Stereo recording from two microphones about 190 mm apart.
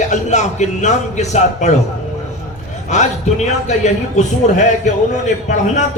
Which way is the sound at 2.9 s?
40° left (ahead or behind).